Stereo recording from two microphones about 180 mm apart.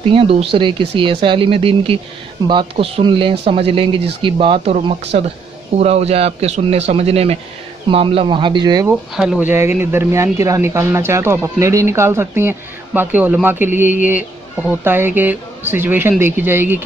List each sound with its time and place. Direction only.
0.0 s speech: 30° right (ahead or behind)
8.8 s speech: 5° right (ahead or behind)